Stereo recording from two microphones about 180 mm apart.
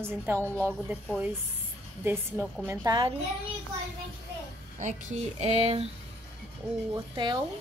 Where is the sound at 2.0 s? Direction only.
10° right (ahead or behind).